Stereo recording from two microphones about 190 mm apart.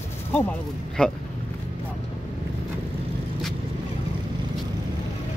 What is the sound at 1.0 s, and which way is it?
Speech, 5° left (ahead or behind).